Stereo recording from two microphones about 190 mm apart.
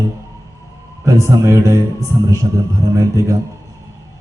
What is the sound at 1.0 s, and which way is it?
A man's voice, 15° right (ahead or behind).